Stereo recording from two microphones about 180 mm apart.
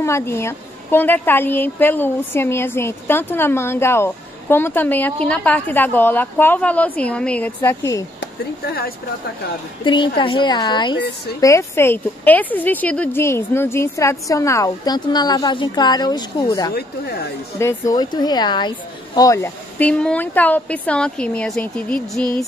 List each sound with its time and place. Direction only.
0.0 s speech: 15° left (ahead or behind)
8.2 s speech: 60° left (ahead or behind)
9.8 s speech: 25° left (ahead or behind)
11.4 s speech: 15° left (ahead or behind)
16.7 s speech: 60° left (ahead or behind)
17.6 s speech: 15° left (ahead or behind)